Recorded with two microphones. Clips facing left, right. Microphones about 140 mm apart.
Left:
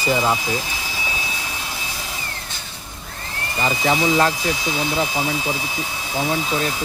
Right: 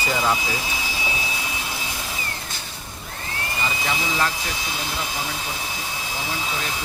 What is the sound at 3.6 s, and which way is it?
Speech, 40° left (ahead or behind).